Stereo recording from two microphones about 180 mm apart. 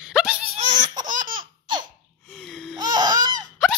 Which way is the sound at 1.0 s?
50° right (ahead or behind).